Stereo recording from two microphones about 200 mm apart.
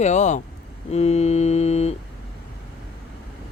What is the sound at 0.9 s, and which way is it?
Music, 30° left (ahead or behind).